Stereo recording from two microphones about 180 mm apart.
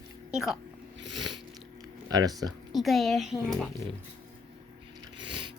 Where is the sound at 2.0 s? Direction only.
20° right (ahead or behind).